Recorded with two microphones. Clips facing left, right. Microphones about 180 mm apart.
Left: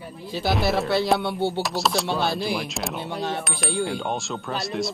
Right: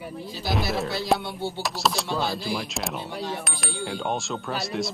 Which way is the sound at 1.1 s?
65° left (ahead or behind).